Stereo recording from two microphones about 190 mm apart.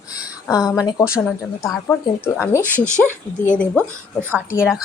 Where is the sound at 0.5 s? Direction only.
20° left (ahead or behind).